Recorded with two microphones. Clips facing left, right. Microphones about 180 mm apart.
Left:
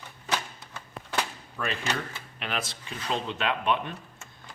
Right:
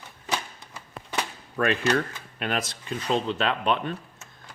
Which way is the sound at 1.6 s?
55° right (ahead or behind).